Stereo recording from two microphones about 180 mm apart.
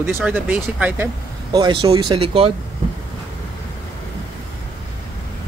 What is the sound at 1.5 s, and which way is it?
Speech, 25° right (ahead or behind).